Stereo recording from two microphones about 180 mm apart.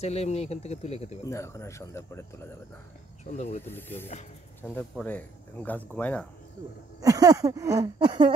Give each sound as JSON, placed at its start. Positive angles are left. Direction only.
{"t": 0.0, "sound": "speech", "side_deg": 35}
{"t": 1.2, "sound": "speech", "side_deg": 15}
{"t": 3.3, "sound": "speech", "side_deg": 35}
{"t": 3.6, "sound": "speech", "side_deg": 10}
{"t": 7.0, "sound": "speech", "side_deg": -20}